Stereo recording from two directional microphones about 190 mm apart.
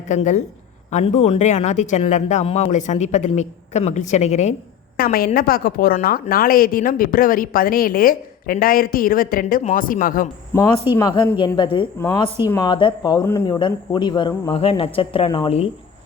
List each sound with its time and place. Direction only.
0.1 s speech: 40° left (ahead or behind)
4.9 s a woman's voice: 50° left (ahead or behind)
10.9 s speech: 20° left (ahead or behind)